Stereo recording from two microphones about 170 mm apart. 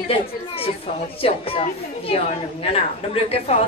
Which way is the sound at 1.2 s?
35° left (ahead or behind).